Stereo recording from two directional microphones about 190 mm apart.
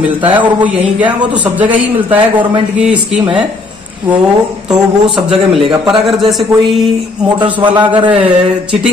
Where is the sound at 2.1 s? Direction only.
25° right (ahead or behind).